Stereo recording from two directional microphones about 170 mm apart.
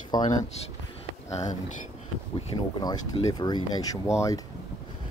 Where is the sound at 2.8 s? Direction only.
25° left (ahead or behind).